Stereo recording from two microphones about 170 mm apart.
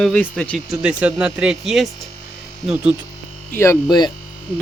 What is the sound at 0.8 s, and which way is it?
Speech, 5° right (ahead or behind).